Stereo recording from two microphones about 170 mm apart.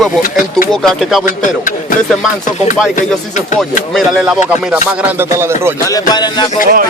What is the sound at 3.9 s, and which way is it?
Speech, centre (ahead or behind).